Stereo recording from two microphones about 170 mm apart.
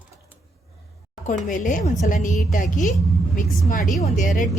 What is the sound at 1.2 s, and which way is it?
Speech, 50° left (ahead or behind).